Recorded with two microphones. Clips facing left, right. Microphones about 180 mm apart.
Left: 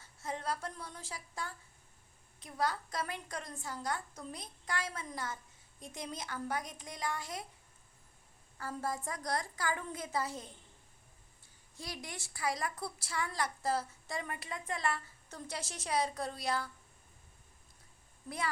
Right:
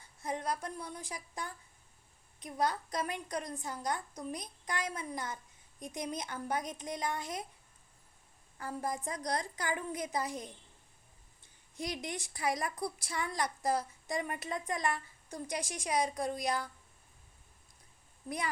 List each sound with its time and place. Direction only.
0.0 s a woman's voice: 15° right (ahead or behind)
8.5 s a woman's voice: 15° right (ahead or behind)
11.8 s a woman's voice: 20° right (ahead or behind)